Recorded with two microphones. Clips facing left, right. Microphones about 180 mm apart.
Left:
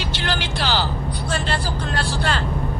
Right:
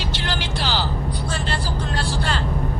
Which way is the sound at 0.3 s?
65° left (ahead or behind).